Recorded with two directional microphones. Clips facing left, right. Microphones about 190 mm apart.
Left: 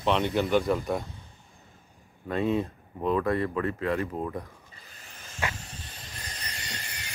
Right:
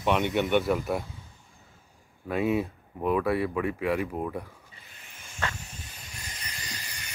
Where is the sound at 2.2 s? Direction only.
10° right (ahead or behind).